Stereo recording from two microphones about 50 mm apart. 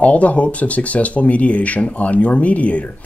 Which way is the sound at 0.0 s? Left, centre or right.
Left.